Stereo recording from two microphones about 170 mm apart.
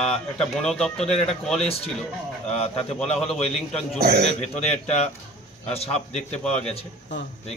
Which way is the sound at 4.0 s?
65° right (ahead or behind).